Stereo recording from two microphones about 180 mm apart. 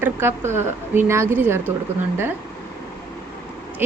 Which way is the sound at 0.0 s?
15° right (ahead or behind).